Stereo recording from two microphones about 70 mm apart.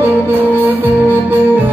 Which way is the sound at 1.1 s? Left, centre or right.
Right.